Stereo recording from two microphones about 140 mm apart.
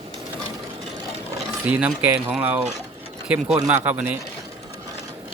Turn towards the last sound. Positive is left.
turn(degrees=-10)  # may be behind; listen again after turning